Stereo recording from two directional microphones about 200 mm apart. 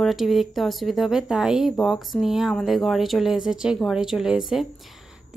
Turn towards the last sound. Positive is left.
turn(degrees=0)  # may be behind; listen again after turning